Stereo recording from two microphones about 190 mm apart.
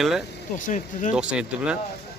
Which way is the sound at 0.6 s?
40° left (ahead or behind).